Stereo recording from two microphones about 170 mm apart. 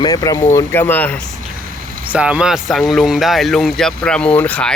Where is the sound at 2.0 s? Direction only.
5° right (ahead or behind).